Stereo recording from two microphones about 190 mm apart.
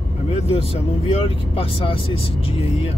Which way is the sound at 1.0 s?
30° left (ahead or behind).